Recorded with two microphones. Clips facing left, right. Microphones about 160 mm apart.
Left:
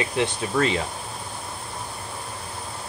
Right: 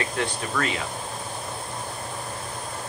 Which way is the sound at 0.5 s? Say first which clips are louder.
Left 6 dB; 30° left (ahead or behind).